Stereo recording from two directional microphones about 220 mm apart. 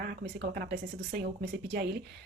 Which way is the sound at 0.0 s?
45° right (ahead or behind).